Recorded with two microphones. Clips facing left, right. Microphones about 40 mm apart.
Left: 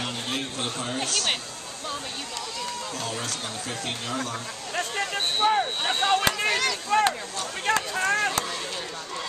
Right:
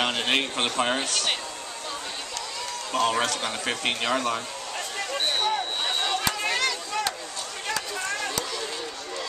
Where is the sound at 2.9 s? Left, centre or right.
Right.